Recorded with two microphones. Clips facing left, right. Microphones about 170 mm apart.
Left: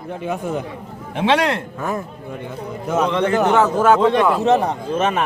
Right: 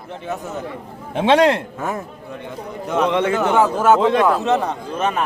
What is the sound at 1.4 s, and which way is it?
Speech, 20° right (ahead or behind).